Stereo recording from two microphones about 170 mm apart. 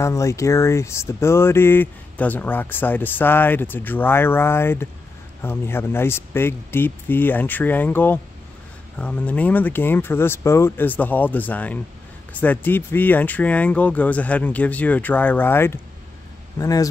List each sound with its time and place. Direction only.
0.0 s a man's voice: 15° left (ahead or behind)